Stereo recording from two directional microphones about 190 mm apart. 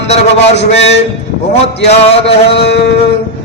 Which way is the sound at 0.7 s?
35° left (ahead or behind).